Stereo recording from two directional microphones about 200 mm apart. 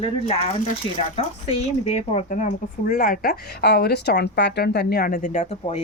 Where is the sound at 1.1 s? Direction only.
30° left (ahead or behind).